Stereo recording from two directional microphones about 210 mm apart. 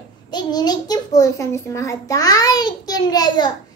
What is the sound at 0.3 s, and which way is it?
A child's voice, 20° left (ahead or behind).